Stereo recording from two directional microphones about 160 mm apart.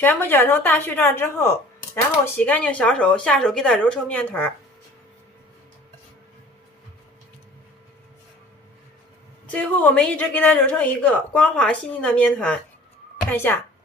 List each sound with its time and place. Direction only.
0.0 s a woman's voice: 10° left (ahead or behind)
9.5 s a woman's voice: 10° left (ahead or behind)